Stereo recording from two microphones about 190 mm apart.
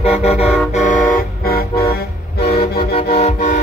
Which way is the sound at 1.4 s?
50° left (ahead or behind).